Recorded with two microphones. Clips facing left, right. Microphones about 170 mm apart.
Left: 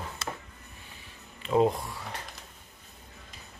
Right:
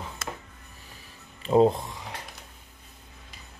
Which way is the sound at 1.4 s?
30° right (ahead or behind).